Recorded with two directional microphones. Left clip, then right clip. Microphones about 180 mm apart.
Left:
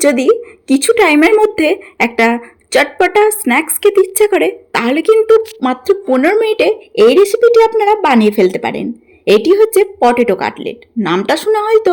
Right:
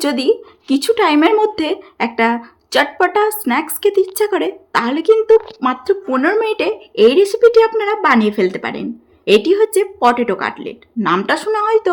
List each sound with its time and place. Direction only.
0.0 s speech: 20° left (ahead or behind)